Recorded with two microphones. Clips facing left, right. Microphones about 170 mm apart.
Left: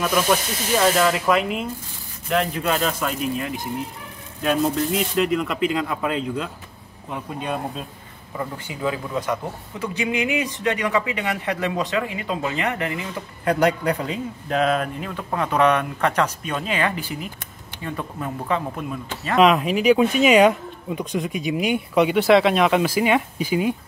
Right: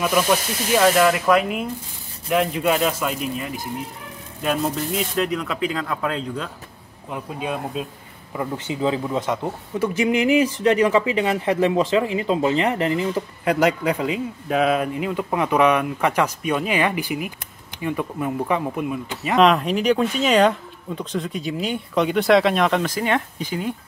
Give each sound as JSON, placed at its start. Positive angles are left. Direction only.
{"t": 0.0, "sound": "speech", "side_deg": -5}
{"t": 8.4, "sound": "speech", "side_deg": -25}
{"t": 10.6, "sound": "speech", "side_deg": -30}
{"t": 13.5, "sound": "a man's voice", "side_deg": -5}
{"t": 19.3, "sound": "speech", "side_deg": 5}